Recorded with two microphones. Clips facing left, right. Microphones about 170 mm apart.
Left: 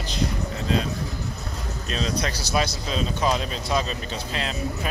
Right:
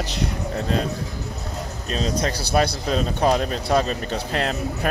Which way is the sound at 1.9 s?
45° right (ahead or behind).